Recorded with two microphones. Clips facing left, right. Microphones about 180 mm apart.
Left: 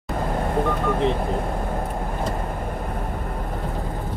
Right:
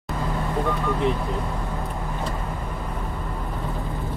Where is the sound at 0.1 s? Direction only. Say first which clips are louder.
Left 3 dB; 50° left (ahead or behind).